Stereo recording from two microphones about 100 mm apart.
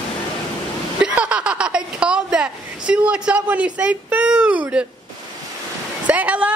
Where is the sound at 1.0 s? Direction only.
10° right (ahead or behind).